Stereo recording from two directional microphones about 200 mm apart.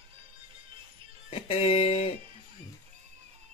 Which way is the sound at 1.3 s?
30° left (ahead or behind).